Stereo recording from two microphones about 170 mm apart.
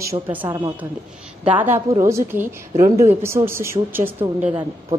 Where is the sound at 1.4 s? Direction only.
10° right (ahead or behind).